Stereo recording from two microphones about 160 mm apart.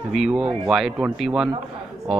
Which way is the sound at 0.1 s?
Centre (ahead or behind).